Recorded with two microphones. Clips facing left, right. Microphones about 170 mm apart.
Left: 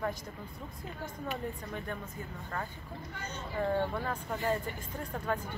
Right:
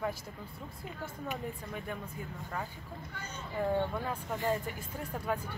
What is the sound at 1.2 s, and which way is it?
Speech, 5° right (ahead or behind).